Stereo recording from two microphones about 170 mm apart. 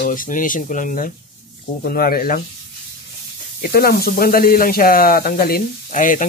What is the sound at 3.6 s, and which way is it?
Speech, 60° left (ahead or behind).